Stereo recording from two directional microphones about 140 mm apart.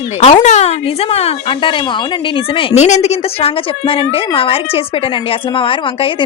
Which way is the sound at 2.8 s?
55° left (ahead or behind).